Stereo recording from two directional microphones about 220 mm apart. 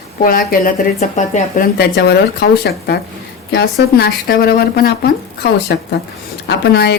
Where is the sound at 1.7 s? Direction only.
50° left (ahead or behind).